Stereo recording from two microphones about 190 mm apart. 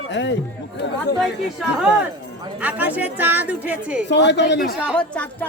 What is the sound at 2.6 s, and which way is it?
A woman's voice, 10° right (ahead or behind).